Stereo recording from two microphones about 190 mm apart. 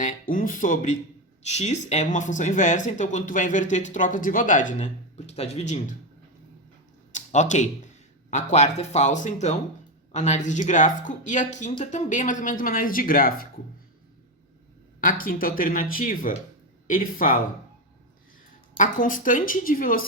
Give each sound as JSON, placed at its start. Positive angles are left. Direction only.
{"t": 0.0, "sound": "speech", "side_deg": 45}
{"t": 7.1, "sound": "a sound", "side_deg": 40}
{"t": 8.3, "sound": "speech", "side_deg": 40}
{"t": 15.0, "sound": "speech", "side_deg": 50}
{"t": 18.8, "sound": "speech", "side_deg": 45}